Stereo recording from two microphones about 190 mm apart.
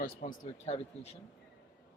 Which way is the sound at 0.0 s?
40° left (ahead or behind).